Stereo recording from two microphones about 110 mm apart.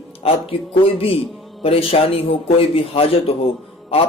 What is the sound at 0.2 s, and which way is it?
Speech, 60° left (ahead or behind).